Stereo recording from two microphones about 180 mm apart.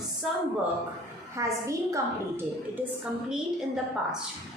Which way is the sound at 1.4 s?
15° right (ahead or behind).